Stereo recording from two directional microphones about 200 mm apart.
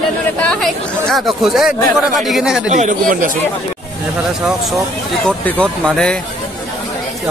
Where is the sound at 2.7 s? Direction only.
40° right (ahead or behind).